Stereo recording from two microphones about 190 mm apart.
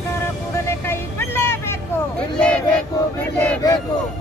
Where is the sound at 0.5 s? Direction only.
10° left (ahead or behind).